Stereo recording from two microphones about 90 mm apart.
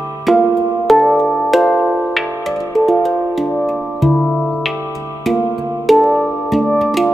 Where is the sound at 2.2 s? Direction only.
Centre (ahead or behind).